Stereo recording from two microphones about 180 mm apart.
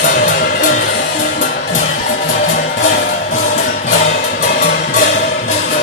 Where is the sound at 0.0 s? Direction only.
45° left (ahead or behind).